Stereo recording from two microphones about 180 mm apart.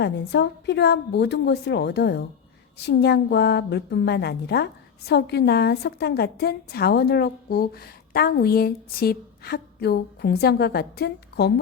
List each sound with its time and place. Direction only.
0.0 s a woman's voice: 70° left (ahead or behind)